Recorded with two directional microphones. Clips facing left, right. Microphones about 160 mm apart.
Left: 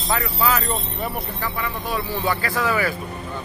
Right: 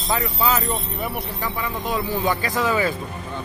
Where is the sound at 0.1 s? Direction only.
20° right (ahead or behind).